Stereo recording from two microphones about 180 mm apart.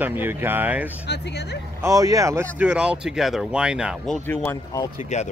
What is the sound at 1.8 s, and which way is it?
Speech, 20° right (ahead or behind).